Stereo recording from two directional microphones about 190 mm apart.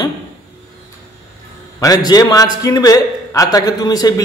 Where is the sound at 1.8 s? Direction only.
20° left (ahead or behind).